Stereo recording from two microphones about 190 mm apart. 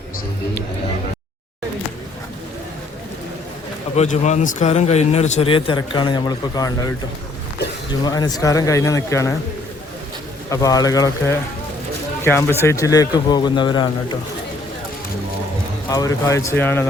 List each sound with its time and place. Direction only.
3.9 s a man's voice: 40° left (ahead or behind); by 6.9 s 20° left (ahead or behind)
8.0 s speech: 20° left (ahead or behind)
10.5 s a man's voice: 20° left (ahead or behind)
15.9 s speech: 15° left (ahead or behind)